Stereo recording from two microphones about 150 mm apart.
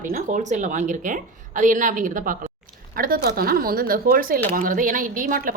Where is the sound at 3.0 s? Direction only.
80° right.